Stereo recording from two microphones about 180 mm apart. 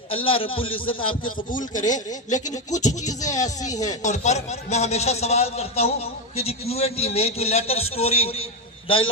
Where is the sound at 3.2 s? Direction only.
20° left (ahead or behind).